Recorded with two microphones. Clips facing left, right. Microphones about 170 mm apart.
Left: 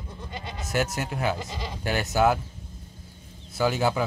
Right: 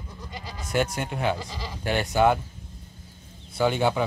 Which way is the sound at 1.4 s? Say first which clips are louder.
Left 1 dB; 20° left (ahead or behind).